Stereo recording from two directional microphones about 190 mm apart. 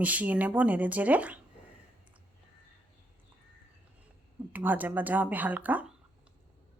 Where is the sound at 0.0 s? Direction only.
10° right (ahead or behind).